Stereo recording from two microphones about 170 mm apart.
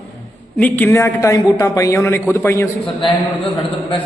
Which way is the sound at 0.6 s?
10° left (ahead or behind).